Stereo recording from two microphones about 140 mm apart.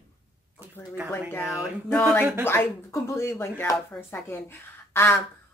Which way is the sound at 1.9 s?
10° left (ahead or behind).